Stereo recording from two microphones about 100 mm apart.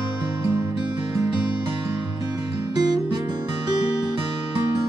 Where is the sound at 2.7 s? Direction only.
40° right (ahead or behind).